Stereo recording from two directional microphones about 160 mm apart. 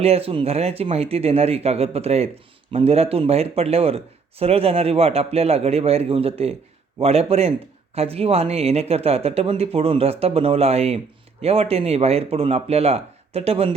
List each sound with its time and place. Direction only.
0.0 s speech: 40° right (ahead or behind)